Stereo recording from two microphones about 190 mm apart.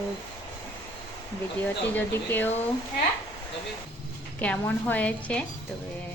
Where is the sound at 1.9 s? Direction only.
10° left (ahead or behind).